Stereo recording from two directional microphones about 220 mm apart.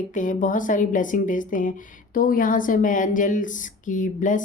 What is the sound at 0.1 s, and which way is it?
A woman's voice, 35° left (ahead or behind).